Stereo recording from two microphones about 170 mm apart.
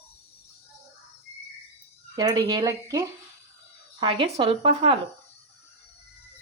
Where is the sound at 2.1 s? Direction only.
20° right (ahead or behind).